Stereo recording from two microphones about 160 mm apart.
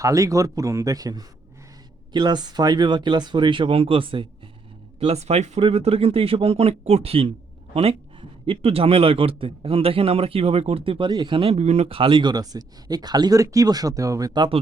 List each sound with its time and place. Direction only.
0.0 s a man's voice: 20° right (ahead or behind)